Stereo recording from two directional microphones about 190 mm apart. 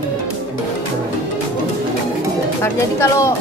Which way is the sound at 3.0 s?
15° left (ahead or behind).